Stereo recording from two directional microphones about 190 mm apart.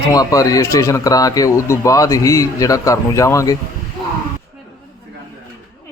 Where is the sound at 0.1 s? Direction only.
20° left (ahead or behind).